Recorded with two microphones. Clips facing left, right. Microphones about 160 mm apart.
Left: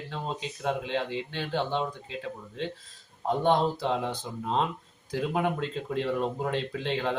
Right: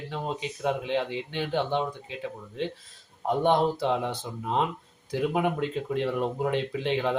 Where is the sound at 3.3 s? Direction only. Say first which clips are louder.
Right 1 dB; 15° right (ahead or behind).